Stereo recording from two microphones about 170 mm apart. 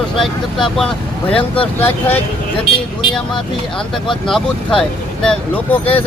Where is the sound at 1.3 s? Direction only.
30° left (ahead or behind).